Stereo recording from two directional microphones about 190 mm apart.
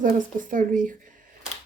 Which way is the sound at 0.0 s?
45° right (ahead or behind).